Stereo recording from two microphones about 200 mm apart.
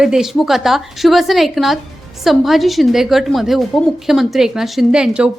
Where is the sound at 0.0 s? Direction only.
5° right (ahead or behind).